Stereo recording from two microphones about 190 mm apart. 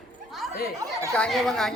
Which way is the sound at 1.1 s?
5° left (ahead or behind).